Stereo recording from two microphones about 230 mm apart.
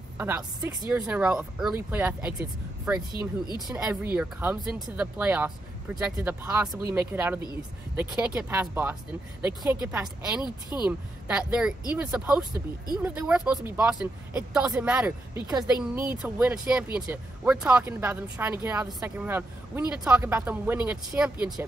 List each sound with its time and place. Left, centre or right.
0.2 s speech: centre
10.4 s speech: centre
10.9 s speech: centre